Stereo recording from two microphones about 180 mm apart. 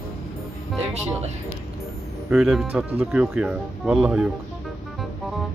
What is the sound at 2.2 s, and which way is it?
Speech, 5° right (ahead or behind).